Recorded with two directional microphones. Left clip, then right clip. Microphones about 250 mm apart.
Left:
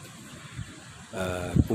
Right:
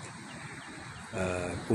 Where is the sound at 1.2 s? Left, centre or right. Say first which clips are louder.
Left 1 dB; centre.